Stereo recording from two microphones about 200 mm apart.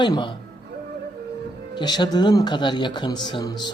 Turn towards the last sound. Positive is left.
turn(degrees=20)  # may be behind; listen again after turning